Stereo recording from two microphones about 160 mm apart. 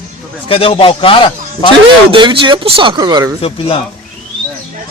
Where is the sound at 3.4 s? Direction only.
35° left (ahead or behind).